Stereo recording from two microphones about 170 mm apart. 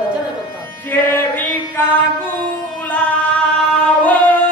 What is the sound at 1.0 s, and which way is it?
Chant, 15° left (ahead or behind).